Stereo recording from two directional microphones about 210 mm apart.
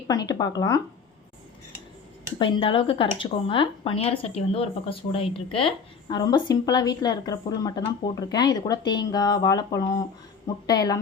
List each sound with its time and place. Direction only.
0.1 s speech: 20° left (ahead or behind)
2.4 s speech: 25° left (ahead or behind)